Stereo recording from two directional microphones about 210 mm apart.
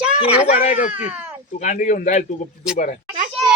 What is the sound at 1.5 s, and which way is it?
Speech, 40° left (ahead or behind).